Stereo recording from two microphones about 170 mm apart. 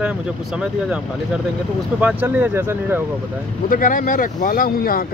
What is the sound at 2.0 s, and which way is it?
Speech, 10° right (ahead or behind).